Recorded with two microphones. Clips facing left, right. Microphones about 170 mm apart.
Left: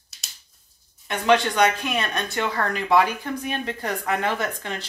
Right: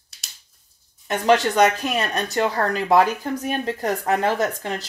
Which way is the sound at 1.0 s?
40° right (ahead or behind).